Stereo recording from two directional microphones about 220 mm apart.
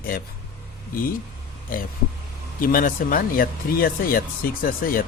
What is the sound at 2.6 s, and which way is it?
A man's voice, 40° left (ahead or behind).